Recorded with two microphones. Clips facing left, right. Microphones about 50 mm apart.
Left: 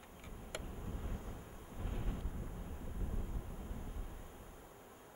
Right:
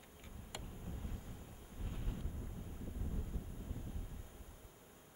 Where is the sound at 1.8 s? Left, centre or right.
Left.